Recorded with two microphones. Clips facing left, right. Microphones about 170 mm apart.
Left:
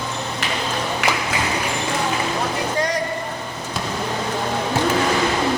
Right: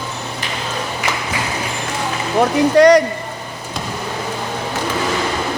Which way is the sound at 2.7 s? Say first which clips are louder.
Right 17 dB; 75° right (ahead or behind).